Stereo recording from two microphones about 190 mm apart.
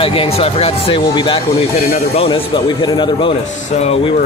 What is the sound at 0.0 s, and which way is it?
A man's voice, 30° left (ahead or behind).